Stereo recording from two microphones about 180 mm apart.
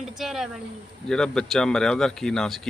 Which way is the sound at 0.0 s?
Centre (ahead or behind).